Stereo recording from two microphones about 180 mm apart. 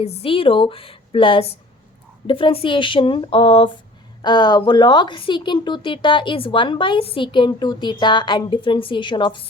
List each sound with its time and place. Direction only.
0.0 s a woman's voice: 35° left (ahead or behind)